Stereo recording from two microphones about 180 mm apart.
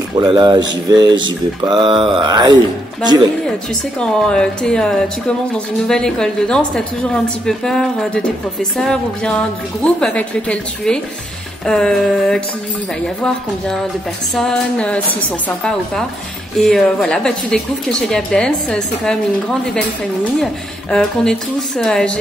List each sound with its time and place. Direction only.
0.2 s speech: 25° right (ahead or behind)
4.0 s speech: 5° left (ahead or behind)
20.9 s speech: centre (ahead or behind)